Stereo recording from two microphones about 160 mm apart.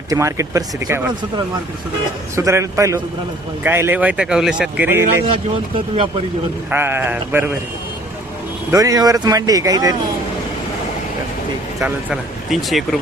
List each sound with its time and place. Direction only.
0.1 s speech: 20° right (ahead or behind)
2.3 s a man's voice: 15° right (ahead or behind)
5.2 s speech: 35° right (ahead or behind)
6.7 s a man's voice: 15° right (ahead or behind)
8.7 s speech: 20° right (ahead or behind)
11.8 s speech: 5° right (ahead or behind)